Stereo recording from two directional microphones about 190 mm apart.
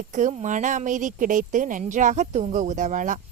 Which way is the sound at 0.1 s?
40° right (ahead or behind).